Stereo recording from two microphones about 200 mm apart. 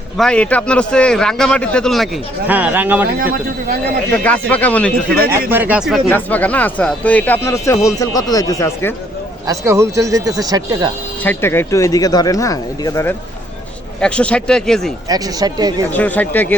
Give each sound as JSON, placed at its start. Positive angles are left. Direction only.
{"t": 0.2, "sound": "a man's voice", "side_deg": 5}
{"t": 2.5, "sound": "speech", "side_deg": -10}
{"t": 4.1, "sound": "speech", "side_deg": 5}
{"t": 5.5, "sound": "speech", "side_deg": -10}
{"t": 6.1, "sound": "speech", "side_deg": 10}
{"t": 9.5, "sound": "speech", "side_deg": -15}
{"t": 11.2, "sound": "a man's voice", "side_deg": 10}
{"t": 15.1, "sound": "speech", "side_deg": -20}
{"t": 15.9, "sound": "speech", "side_deg": 10}